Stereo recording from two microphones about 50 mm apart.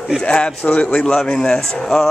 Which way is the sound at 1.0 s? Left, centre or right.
Centre.